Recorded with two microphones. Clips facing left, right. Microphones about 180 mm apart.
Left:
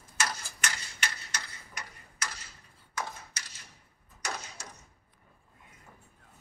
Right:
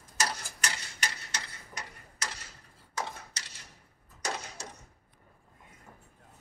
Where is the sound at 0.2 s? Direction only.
35° right (ahead or behind).